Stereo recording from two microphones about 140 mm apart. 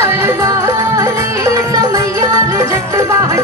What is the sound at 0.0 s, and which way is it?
Music, 20° right (ahead or behind).